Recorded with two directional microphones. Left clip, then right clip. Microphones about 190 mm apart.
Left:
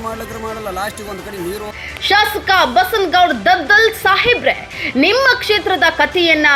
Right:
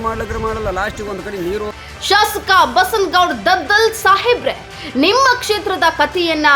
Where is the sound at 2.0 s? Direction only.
Centre (ahead or behind).